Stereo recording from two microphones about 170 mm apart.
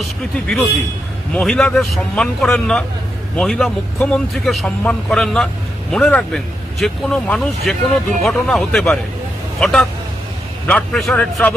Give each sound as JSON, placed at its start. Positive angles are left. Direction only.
{"t": 0.0, "sound": "speech", "side_deg": 0}